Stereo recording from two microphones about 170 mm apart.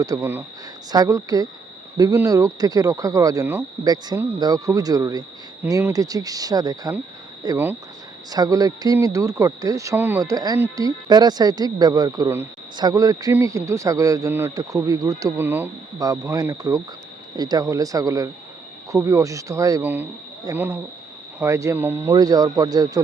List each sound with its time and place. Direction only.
0.0 s speech: 20° right (ahead or behind)